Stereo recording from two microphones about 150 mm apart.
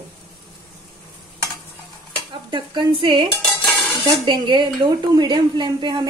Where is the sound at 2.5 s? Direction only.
30° right (ahead or behind).